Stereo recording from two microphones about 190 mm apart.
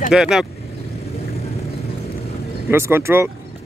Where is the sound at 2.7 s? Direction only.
15° right (ahead or behind).